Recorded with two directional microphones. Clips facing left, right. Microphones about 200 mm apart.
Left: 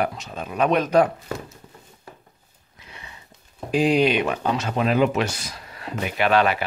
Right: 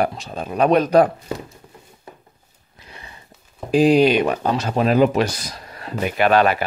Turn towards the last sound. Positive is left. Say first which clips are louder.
# right 3 dB
turn(degrees=-45)  # may be behind; listen again after turning